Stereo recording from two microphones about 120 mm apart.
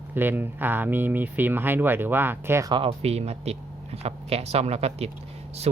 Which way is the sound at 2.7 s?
50° right (ahead or behind).